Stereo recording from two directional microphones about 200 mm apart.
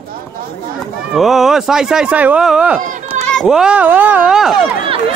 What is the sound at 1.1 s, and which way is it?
Speech, centre (ahead or behind).